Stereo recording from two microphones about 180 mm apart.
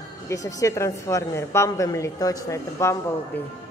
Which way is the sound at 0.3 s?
20° left (ahead or behind).